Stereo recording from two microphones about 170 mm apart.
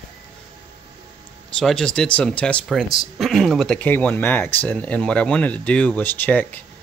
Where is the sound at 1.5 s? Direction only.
5° left (ahead or behind).